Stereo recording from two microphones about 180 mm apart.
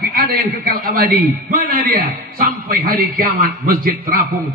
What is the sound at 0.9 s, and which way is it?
A man's voice, 55° right (ahead or behind).